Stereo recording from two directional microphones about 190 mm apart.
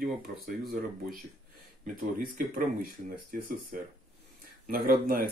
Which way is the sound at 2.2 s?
50° right (ahead or behind).